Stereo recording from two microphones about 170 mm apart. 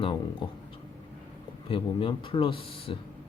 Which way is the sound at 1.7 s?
30° left (ahead or behind).